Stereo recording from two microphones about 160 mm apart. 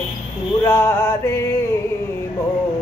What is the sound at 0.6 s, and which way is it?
Music, 15° left (ahead or behind).